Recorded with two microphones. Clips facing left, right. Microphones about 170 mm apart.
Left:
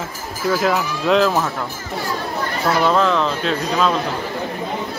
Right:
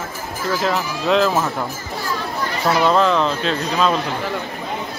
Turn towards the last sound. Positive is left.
turn(degrees=0)  # may be behind; listen again after turning